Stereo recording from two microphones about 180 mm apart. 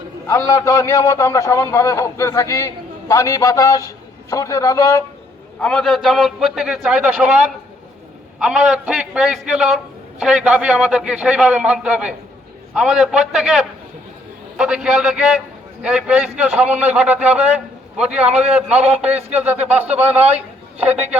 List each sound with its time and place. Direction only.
0.3 s a man's voice: 15° left (ahead or behind)
5.5 s a man's voice: 5° left (ahead or behind)